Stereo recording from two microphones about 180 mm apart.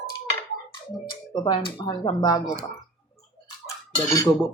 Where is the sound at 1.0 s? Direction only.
25° left (ahead or behind).